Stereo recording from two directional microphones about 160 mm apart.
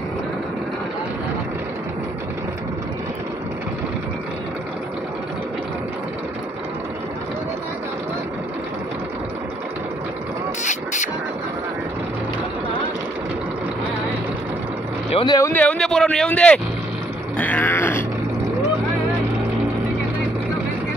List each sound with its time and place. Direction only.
10.6 s a sound: 50° left (ahead or behind)
15.2 s speech: 20° left (ahead or behind)
15.5 s speech: 5° left (ahead or behind)
17.4 s grunt: 10° left (ahead or behind)